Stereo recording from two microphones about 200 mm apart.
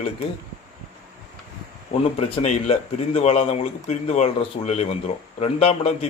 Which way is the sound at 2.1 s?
35° left (ahead or behind).